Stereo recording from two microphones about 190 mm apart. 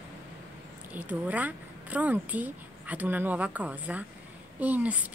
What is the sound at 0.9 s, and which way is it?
Speech, 10° right (ahead or behind).